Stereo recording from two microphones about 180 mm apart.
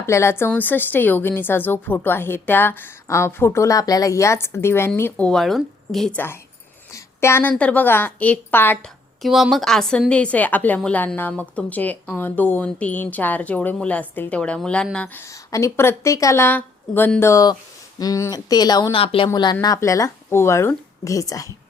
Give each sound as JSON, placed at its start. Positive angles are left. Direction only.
{"t": 0.0, "sound": "a woman's voice", "side_deg": 15}